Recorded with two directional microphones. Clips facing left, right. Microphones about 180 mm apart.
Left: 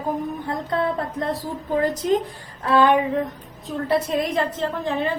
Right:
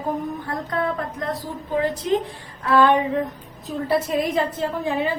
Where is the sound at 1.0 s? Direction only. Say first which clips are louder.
Left 2 dB; 30° left (ahead or behind).